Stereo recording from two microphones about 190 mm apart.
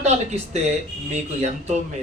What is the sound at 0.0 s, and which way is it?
A man's voice, 35° right (ahead or behind).